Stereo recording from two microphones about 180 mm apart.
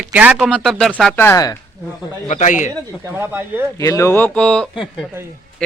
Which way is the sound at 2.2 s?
40° left (ahead or behind).